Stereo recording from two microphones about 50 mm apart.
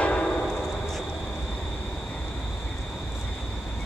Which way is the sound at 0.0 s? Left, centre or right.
Left.